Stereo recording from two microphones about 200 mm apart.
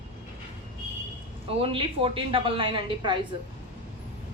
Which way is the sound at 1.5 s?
25° right (ahead or behind).